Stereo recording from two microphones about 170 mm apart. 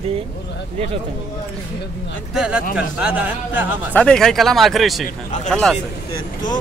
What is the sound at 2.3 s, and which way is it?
Speech, 5° right (ahead or behind).